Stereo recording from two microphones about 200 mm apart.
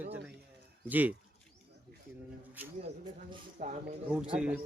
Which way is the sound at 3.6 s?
35° right (ahead or behind).